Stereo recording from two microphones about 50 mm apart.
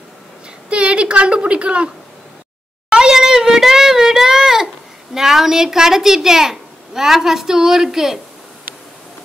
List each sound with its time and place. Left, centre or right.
0.7 s a woman's voice: right
2.9 s a sound: centre
5.1 s a woman's voice: centre